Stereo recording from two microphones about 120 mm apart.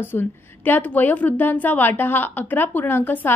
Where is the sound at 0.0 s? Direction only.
15° left (ahead or behind).